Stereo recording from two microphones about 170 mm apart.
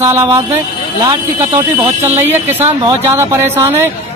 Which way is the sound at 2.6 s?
40° right (ahead or behind).